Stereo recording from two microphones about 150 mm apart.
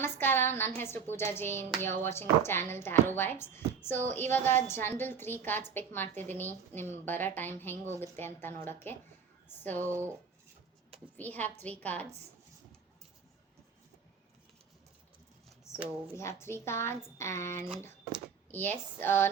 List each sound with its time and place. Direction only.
0.0 s a woman's voice: 15° left (ahead or behind)
9.9 s speech: 15° right (ahead or behind)
11.2 s a woman's voice: 10° left (ahead or behind)
15.7 s a sound: 20° left (ahead or behind)
16.1 s a woman's voice: 15° left (ahead or behind)